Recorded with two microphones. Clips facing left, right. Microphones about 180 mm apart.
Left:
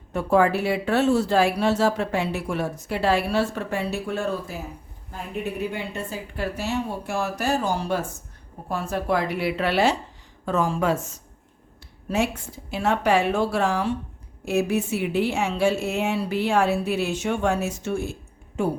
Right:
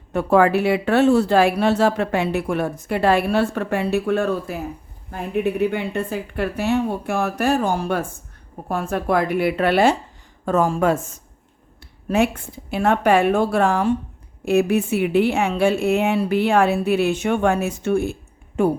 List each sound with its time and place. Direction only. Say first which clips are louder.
0.1 s a woman's voice: right 4 dB; 65° right (ahead or behind)